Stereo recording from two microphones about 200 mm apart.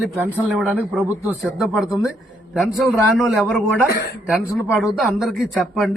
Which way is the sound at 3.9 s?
50° left (ahead or behind).